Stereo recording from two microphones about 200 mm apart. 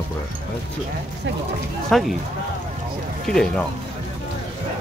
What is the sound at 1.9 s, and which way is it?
Speech, centre (ahead or behind).